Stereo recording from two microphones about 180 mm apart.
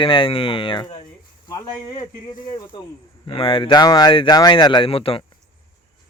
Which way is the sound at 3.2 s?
30° left (ahead or behind).